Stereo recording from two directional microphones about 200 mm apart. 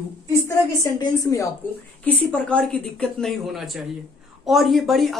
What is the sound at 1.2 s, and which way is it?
Speech, 15° left (ahead or behind).